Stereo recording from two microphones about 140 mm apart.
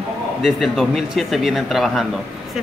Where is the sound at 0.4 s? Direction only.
Centre (ahead or behind).